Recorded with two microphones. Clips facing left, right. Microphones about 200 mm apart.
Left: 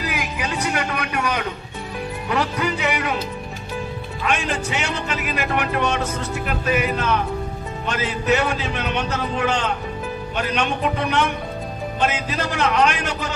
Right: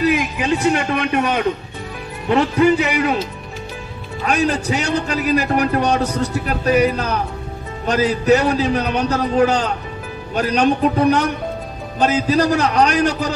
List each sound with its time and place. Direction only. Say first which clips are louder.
0.1 s a man's voice: right 8 dB; 25° right (ahead or behind)
2.2 s music: right 9 dB; 25° right (ahead or behind)
4.2 s a man's voice: right 6 dB; 40° right (ahead or behind)